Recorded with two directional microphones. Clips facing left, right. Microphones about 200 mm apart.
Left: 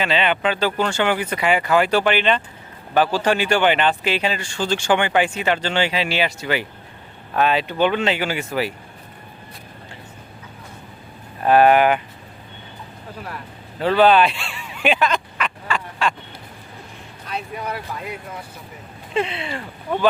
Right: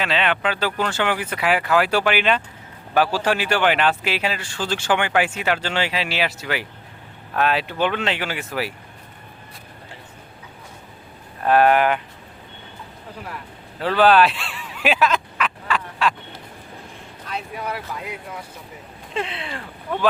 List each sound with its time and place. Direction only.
0.0 s speech: centre (ahead or behind)
11.4 s speech: centre (ahead or behind)
13.7 s a sound: centre (ahead or behind)
17.2 s speech: centre (ahead or behind)
19.1 s speech: centre (ahead or behind)